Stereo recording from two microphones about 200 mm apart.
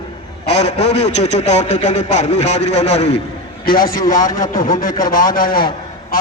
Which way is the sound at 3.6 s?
20° left (ahead or behind).